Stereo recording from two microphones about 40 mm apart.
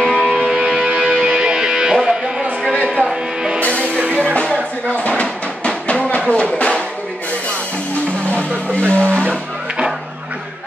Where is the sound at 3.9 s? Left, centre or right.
Right.